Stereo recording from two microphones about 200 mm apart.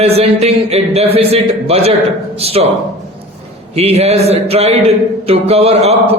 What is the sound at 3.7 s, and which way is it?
A man's voice, 30° right (ahead or behind).